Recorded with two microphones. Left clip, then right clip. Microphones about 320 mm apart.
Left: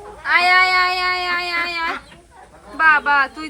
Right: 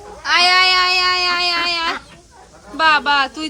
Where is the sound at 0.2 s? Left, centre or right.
Centre.